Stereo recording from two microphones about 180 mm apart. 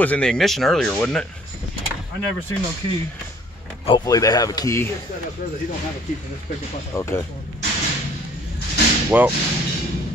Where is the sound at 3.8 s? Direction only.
20° left (ahead or behind).